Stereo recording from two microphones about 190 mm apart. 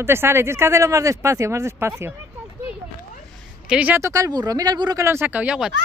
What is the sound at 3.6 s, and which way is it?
Speech, 10° right (ahead or behind).